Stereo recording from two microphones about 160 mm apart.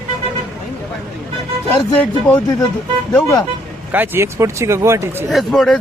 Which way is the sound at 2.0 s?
10° left (ahead or behind).